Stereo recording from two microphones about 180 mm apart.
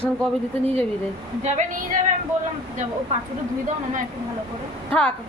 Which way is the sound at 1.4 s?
40° right (ahead or behind).